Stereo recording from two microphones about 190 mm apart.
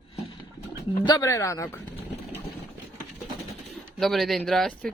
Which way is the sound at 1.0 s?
20° left (ahead or behind).